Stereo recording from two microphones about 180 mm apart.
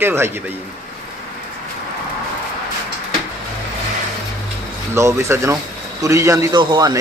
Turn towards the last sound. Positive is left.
turn(degrees=-20)  # may be behind; listen again after turning